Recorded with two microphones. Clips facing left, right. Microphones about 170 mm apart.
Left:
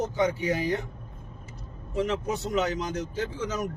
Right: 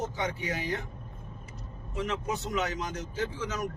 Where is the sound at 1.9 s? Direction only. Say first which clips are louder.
Left 5 dB; 30° left (ahead or behind).